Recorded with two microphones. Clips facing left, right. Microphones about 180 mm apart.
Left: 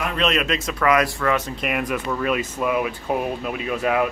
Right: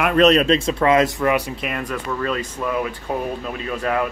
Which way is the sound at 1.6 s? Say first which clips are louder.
Left 2 dB; 5° left (ahead or behind).